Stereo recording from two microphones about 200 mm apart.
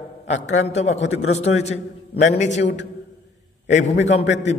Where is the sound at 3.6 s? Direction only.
35° left (ahead or behind).